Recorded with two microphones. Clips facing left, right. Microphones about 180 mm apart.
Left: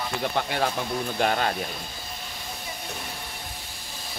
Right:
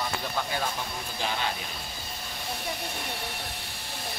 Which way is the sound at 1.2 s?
55° left (ahead or behind).